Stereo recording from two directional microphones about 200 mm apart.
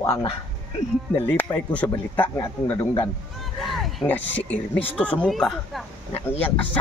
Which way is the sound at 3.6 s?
Centre (ahead or behind).